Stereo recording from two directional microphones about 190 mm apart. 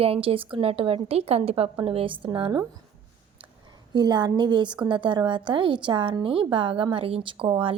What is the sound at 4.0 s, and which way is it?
A woman's voice, 20° right (ahead or behind).